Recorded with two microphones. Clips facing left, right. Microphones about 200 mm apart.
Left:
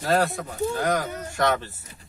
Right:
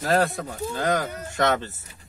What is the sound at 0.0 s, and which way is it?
Speech, 15° right (ahead or behind).